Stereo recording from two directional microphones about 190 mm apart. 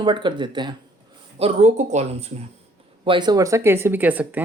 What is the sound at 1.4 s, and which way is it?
Speech, 35° right (ahead or behind).